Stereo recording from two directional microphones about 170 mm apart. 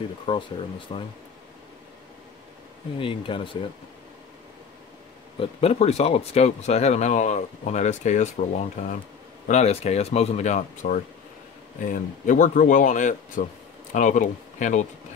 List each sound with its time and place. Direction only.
0.3 s speech: 30° left (ahead or behind)
3.0 s speech: 30° left (ahead or behind)
5.4 s speech: 35° left (ahead or behind)